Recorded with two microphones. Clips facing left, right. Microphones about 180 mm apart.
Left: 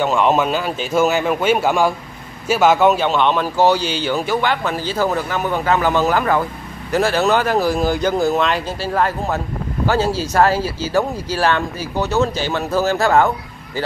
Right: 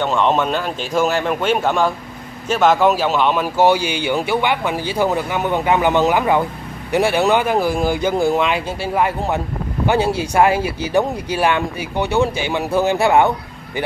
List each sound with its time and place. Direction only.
0.0 s a man's voice: 5° left (ahead or behind); by 13.3 s 15° right (ahead or behind)